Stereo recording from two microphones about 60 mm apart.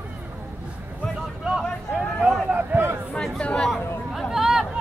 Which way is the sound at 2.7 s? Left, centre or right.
Right.